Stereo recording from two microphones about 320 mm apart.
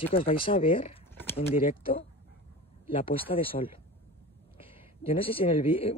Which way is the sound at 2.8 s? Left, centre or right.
Centre.